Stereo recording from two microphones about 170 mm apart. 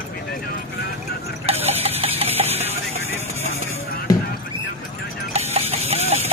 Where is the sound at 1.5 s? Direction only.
35° right (ahead or behind).